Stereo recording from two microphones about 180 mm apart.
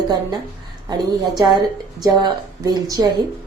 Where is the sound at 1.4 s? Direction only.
25° right (ahead or behind).